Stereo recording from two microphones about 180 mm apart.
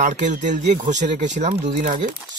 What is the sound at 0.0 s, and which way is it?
Speech, 45° right (ahead or behind).